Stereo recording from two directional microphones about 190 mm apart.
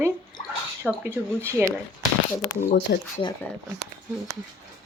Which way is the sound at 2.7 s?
55° left (ahead or behind).